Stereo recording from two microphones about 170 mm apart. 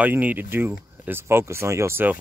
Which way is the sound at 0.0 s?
10° right (ahead or behind).